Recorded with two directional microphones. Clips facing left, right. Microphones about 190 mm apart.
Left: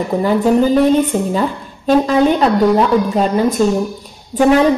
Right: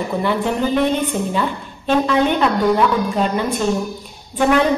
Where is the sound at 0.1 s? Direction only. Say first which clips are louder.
Left 8 dB; 40° left (ahead or behind).